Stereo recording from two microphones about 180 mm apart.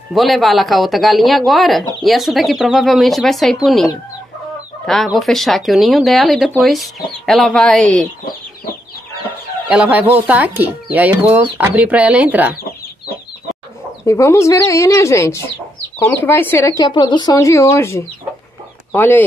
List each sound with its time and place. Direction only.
0.1 s speech: centre (ahead or behind)
9.7 s speech: 5° right (ahead or behind)
14.0 s speech: 15° left (ahead or behind)